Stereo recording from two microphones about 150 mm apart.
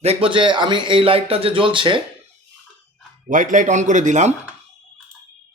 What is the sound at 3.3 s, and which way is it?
Speech, 60° right (ahead or behind).